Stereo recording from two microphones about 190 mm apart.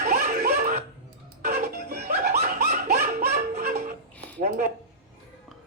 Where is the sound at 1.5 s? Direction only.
40° right (ahead or behind).